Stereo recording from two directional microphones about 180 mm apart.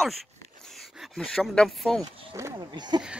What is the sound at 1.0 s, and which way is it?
Speech, 5° left (ahead or behind).